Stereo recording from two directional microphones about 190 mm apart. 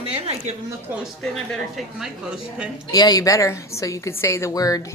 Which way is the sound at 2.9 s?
20° left (ahead or behind).